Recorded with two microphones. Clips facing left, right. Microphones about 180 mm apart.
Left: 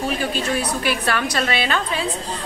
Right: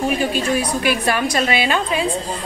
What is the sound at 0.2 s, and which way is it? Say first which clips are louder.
Speech: right 3 dB; 10° right (ahead or behind).